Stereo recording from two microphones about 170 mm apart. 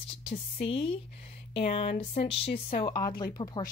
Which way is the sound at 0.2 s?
35° left (ahead or behind).